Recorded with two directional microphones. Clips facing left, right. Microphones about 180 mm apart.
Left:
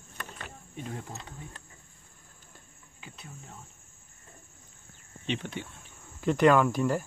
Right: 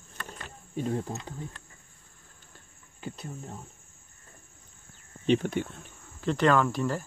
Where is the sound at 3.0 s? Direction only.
35° right (ahead or behind).